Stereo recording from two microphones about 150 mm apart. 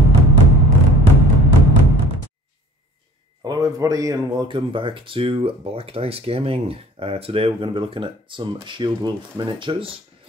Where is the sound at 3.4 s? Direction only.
25° right (ahead or behind).